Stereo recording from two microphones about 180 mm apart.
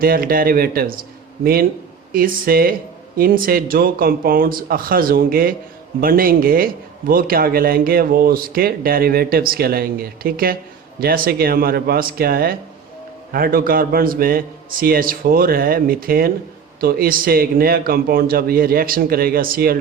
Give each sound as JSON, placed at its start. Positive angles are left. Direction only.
{"t": 0.0, "sound": "speech", "side_deg": -55}
{"t": 2.1, "sound": "a man's voice", "side_deg": -50}